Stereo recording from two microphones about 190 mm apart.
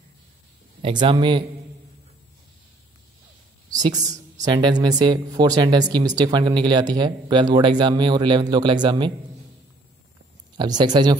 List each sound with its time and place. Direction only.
0.8 s speech: 25° right (ahead or behind)
3.7 s speech: 20° right (ahead or behind)
10.6 s speech: 25° right (ahead or behind)